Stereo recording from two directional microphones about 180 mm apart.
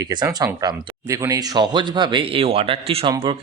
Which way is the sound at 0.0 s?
20° right (ahead or behind).